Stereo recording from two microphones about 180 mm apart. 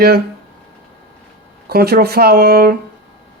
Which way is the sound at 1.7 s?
60° right (ahead or behind).